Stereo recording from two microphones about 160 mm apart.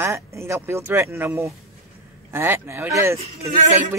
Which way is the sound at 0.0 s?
15° right (ahead or behind).